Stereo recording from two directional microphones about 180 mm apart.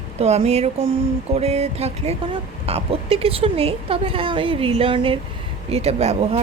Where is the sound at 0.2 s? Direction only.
35° right (ahead or behind).